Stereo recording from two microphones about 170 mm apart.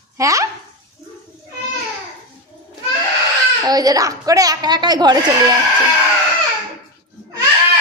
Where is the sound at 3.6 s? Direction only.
20° right (ahead or behind).